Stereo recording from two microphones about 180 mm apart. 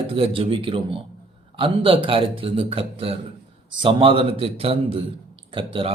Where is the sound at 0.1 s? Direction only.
30° right (ahead or behind).